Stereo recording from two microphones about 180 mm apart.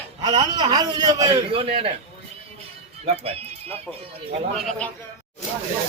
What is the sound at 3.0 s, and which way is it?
Speech, 35° right (ahead or behind).